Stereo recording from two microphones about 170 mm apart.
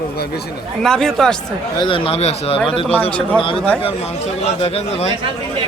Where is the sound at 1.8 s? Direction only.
30° left (ahead or behind).